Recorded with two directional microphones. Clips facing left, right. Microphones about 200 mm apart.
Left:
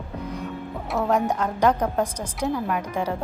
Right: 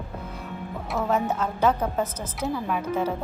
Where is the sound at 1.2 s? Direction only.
15° left (ahead or behind).